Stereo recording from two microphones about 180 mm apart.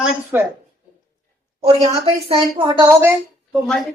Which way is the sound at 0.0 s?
5° right (ahead or behind).